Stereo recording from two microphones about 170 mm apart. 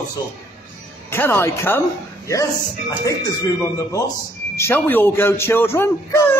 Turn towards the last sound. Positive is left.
turn(degrees=15)  # may be behind; listen again after turning